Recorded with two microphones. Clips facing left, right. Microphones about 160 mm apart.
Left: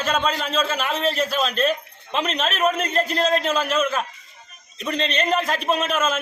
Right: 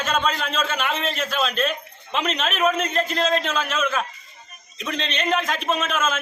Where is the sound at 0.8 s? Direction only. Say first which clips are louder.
Even; centre (ahead or behind).